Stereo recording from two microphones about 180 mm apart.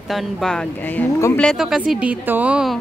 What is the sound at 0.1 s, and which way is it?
Speech, centre (ahead or behind).